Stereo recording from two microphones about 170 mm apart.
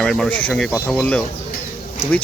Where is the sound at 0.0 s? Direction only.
5° left (ahead or behind).